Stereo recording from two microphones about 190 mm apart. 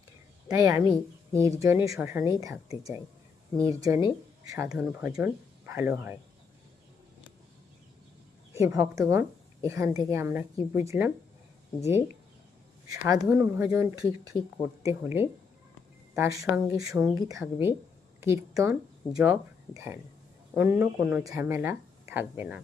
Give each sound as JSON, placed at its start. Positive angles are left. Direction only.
{"t": 0.4, "sound": "a woman's voice", "side_deg": -15}
{"t": 3.6, "sound": "speech", "side_deg": -15}
{"t": 8.5, "sound": "speech", "side_deg": -15}
{"t": 14.8, "sound": "speech", "side_deg": -10}